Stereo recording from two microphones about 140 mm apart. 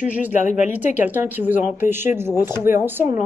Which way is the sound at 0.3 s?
60° left (ahead or behind).